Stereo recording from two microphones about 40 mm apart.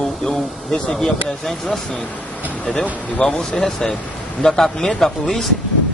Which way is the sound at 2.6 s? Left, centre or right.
Left.